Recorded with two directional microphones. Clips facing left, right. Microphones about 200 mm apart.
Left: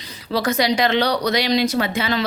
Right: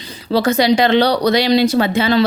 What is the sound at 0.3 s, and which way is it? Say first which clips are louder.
Speech: right 6 dB; 30° right (ahead or behind).